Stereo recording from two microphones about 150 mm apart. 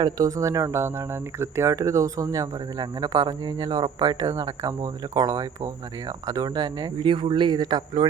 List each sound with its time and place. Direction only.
0.0 s speech: 20° right (ahead or behind)